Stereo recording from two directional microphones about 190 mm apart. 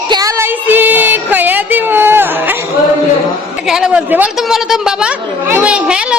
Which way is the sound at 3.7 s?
5° right (ahead or behind).